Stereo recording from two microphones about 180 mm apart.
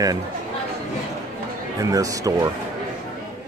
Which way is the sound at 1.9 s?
20° right (ahead or behind).